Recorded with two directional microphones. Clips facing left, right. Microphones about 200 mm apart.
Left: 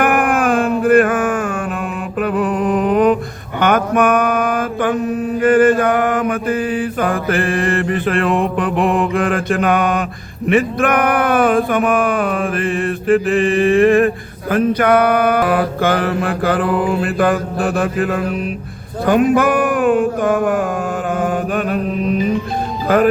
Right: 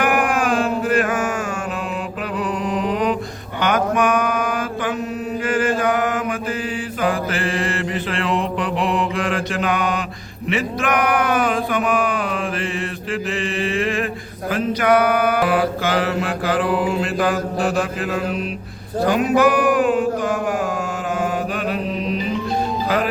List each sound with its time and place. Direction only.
0.0 s music: 55° left (ahead or behind)
2.2 s mantra: 55° left (ahead or behind)
10.5 s a sound: 55° left (ahead or behind)
14.5 s mantra: 55° left (ahead or behind)
19.0 s a sound: 55° left (ahead or behind)
21.2 s mantra: 50° left (ahead or behind)